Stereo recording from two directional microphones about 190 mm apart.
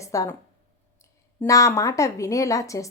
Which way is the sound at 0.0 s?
15° left (ahead or behind).